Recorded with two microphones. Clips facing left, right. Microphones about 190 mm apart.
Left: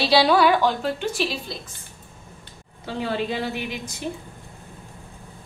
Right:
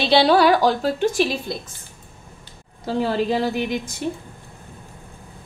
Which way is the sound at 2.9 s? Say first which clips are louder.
Right 5 dB; 40° right (ahead or behind).